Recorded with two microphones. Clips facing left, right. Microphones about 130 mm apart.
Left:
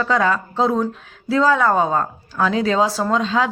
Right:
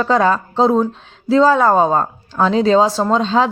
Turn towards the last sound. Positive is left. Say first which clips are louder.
# right 4 dB
turn(degrees=-30)  # may be behind; listen again after turning